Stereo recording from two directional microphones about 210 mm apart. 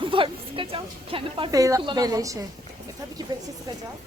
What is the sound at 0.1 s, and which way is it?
A woman's voice, 25° right (ahead or behind).